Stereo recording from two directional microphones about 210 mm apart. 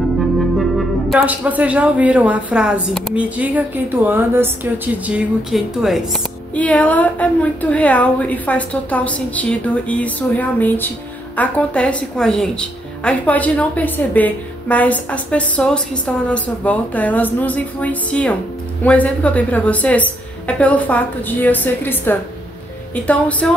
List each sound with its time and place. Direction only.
0.6 s a woman's voice: centre (ahead or behind)